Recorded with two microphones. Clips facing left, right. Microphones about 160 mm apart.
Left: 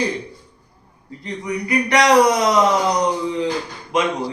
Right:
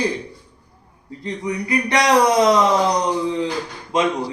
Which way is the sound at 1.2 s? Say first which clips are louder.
Right 1 dB; 25° right (ahead or behind).